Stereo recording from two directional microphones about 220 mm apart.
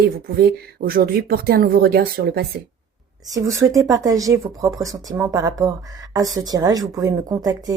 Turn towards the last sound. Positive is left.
turn(degrees=-15)  # may be behind; listen again after turning